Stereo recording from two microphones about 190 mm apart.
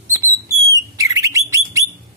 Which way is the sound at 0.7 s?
15° right (ahead or behind).